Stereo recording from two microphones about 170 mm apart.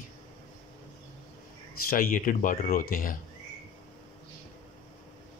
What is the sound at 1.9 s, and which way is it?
Speech, 55° left (ahead or behind).